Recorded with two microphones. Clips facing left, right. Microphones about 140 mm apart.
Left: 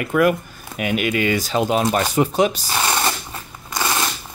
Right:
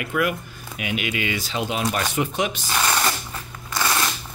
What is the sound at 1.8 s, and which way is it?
Speech, 35° left (ahead or behind).